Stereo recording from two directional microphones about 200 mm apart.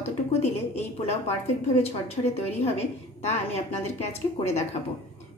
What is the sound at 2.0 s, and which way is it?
A woman's voice, 30° left (ahead or behind).